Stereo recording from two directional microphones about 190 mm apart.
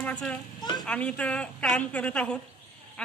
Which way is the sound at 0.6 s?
25° left (ahead or behind).